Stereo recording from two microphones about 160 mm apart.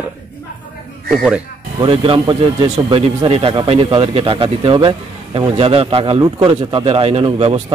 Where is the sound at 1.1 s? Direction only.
5° right (ahead or behind).